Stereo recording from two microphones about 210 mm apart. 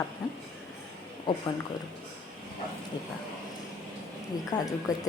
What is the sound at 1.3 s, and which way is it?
Speech, 20° left (ahead or behind).